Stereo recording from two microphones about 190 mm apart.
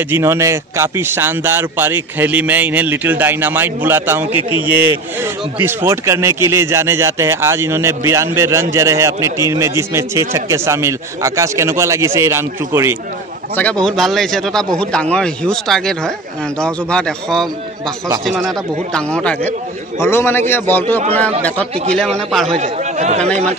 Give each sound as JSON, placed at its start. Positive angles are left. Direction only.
{"t": 0.1, "sound": "a man's voice", "side_deg": -15}
{"t": 13.6, "sound": "speech", "side_deg": 5}
{"t": 18.9, "sound": "a man's voice", "side_deg": 5}
{"t": 22.5, "sound": "speech", "side_deg": -35}